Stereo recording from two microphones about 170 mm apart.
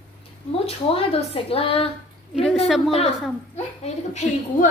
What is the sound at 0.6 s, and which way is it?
Speech, 35° left (ahead or behind).